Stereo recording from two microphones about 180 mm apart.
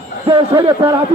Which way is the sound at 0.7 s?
15° right (ahead or behind).